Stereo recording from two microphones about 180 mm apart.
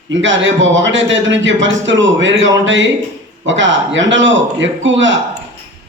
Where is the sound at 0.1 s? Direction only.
90° right.